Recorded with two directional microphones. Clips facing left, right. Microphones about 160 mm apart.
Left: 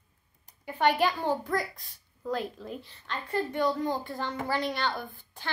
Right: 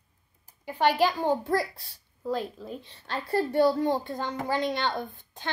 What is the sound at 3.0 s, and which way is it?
A child's voice, 35° right (ahead or behind).